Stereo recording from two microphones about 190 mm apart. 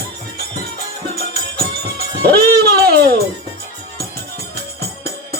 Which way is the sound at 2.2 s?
55° right (ahead or behind).